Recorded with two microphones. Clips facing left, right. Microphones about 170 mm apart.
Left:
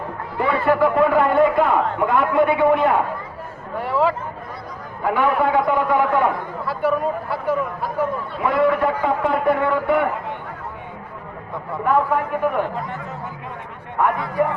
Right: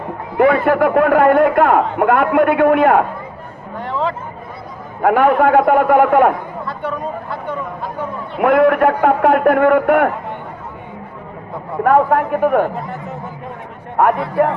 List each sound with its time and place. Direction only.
0.3 s a man's voice: 60° right (ahead or behind)
3.8 s speech: 5° left (ahead or behind)
5.0 s a man's voice: 55° right (ahead or behind)
6.7 s speech: 5° left (ahead or behind)
8.4 s a man's voice: 60° right (ahead or behind)
11.8 s a man's voice: 60° right (ahead or behind)
14.0 s a man's voice: 65° right (ahead or behind)